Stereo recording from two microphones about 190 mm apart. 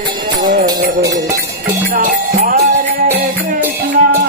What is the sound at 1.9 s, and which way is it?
Music, 40° right (ahead or behind).